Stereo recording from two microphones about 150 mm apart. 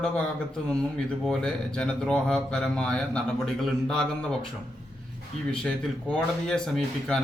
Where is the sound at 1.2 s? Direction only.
5° left (ahead or behind).